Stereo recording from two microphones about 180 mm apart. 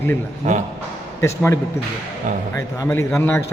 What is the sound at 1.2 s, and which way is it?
Speech, 15° left (ahead or behind).